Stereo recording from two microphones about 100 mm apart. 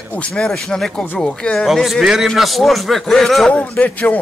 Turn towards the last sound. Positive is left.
turn(degrees=15)  # may be behind; listen again after turning